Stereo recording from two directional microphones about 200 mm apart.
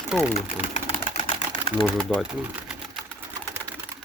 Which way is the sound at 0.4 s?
40° left (ahead or behind).